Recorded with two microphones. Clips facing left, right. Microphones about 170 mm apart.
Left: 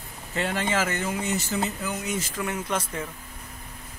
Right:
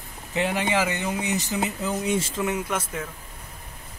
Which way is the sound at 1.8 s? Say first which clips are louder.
Right 5 dB; 25° right (ahead or behind).